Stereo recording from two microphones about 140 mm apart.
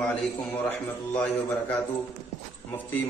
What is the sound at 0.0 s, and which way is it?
A man's voice, 10° left (ahead or behind).